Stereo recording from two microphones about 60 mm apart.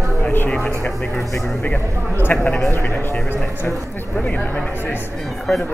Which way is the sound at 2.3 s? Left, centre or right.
Left.